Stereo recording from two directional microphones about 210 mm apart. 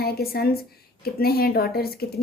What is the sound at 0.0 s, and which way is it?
Speech, 45° left (ahead or behind).